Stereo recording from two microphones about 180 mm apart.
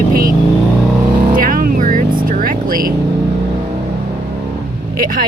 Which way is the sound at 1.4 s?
55° right (ahead or behind).